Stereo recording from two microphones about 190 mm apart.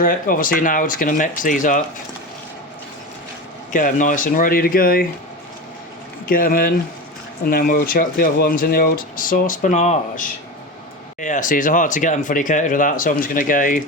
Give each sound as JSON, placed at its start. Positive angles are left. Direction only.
{"t": 0.0, "sound": "speech", "side_deg": 45}
{"t": 3.7, "sound": "speech", "side_deg": 45}
{"t": 6.2, "sound": "speech", "side_deg": 50}